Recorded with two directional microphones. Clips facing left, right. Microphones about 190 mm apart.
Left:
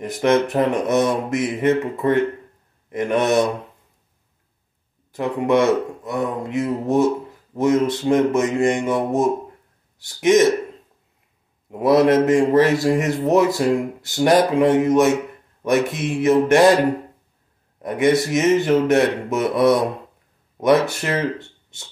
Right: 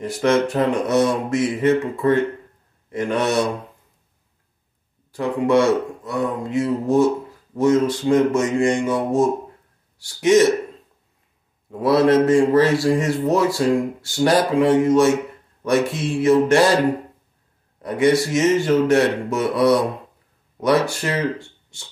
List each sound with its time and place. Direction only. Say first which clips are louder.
0.0 s a man's voice: even; 20° left (ahead or behind)
5.1 s a man's voice: right 1 dB; 20° left (ahead or behind)
11.8 s a man's voice: left 1 dB; 20° left (ahead or behind)
17.8 s a man's voice: even; 20° left (ahead or behind)
20.8 s a man's voice: even; 20° left (ahead or behind)
21.4 s a sound: right 1 dB; 20° left (ahead or behind)